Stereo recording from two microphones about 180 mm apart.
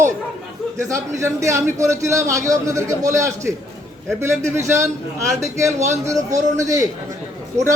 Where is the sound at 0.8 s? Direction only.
15° right (ahead or behind).